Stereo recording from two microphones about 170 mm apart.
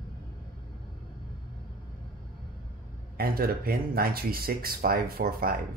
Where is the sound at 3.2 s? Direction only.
60° right (ahead or behind).